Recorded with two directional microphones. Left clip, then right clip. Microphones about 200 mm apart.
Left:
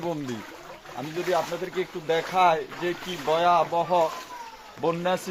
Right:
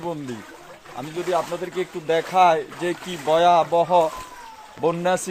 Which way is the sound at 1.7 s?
45° right (ahead or behind).